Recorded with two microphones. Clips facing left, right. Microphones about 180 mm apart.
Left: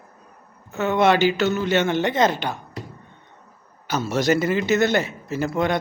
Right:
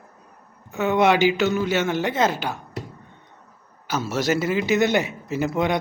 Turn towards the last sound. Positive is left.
turn(degrees=-15)  # may be behind; listen again after turning